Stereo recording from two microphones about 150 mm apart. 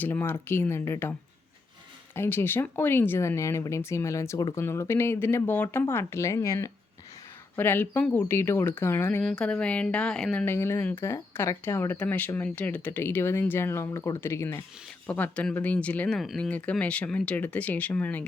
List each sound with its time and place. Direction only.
0.0 s speech: 15° left (ahead or behind)
2.1 s speech: 15° left (ahead or behind)
10.4 s speech: 15° left (ahead or behind)